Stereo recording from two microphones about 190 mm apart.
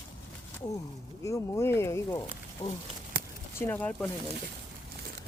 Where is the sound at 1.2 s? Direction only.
15° left (ahead or behind).